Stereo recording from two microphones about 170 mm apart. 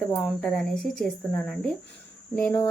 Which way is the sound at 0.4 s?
5° left (ahead or behind).